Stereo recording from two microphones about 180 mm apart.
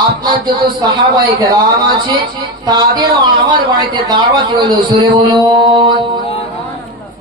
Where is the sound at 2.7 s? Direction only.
20° right (ahead or behind).